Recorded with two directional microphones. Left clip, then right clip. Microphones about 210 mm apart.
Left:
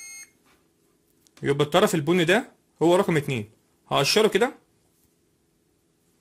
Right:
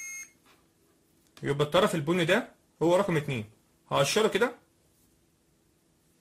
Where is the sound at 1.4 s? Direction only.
40° left (ahead or behind).